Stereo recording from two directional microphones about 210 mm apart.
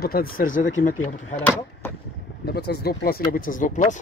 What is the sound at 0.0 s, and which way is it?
Speech, 45° left (ahead or behind).